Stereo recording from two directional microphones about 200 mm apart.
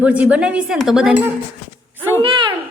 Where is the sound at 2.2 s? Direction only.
25° right (ahead or behind).